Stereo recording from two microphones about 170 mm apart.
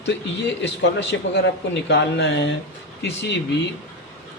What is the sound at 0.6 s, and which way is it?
A man's voice, 90° left.